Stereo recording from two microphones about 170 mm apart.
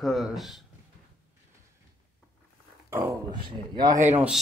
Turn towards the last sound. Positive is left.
turn(degrees=-10)  # may be behind; listen again after turning